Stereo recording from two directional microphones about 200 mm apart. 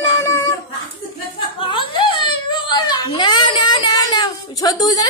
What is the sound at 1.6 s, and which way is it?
A child's voice, 25° left (ahead or behind).